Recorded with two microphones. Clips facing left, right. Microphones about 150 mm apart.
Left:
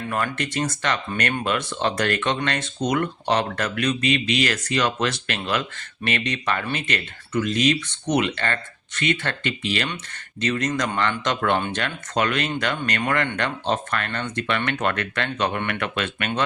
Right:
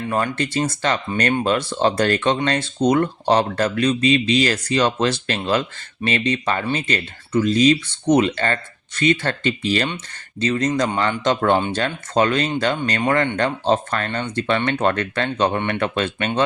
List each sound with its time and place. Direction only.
0.1 s speech: 20° right (ahead or behind)